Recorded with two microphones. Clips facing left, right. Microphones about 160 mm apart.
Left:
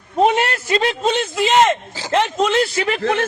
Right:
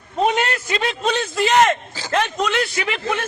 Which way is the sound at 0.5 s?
30° left (ahead or behind).